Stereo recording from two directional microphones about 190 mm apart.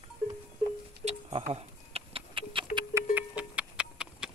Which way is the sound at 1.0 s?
35° right (ahead or behind).